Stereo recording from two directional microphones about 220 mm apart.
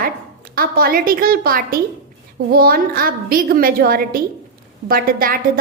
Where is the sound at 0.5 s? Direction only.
40° right (ahead or behind).